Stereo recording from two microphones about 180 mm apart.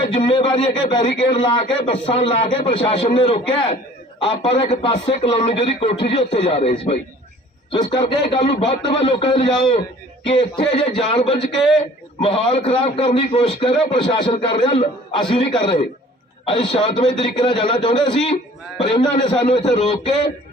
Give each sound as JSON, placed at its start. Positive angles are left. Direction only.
{"t": 0.1, "sound": "speech", "side_deg": 30}
{"t": 7.7, "sound": "speech", "side_deg": 25}